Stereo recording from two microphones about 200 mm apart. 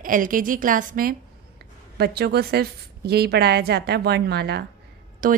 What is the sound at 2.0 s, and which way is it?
A woman's voice, 55° right (ahead or behind).